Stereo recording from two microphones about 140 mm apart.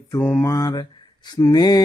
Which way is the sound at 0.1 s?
15° left (ahead or behind).